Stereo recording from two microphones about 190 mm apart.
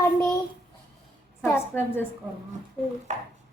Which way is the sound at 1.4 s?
10° left (ahead or behind).